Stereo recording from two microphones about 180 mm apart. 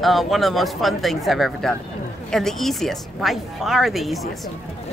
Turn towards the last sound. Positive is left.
turn(degrees=0)  # may be behind; listen again after turning